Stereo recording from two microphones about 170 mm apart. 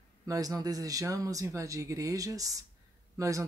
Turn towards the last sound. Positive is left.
turn(degrees=-20)  # may be behind; listen again after turning